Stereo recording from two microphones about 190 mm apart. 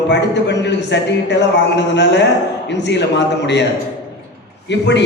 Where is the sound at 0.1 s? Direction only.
65° left (ahead or behind).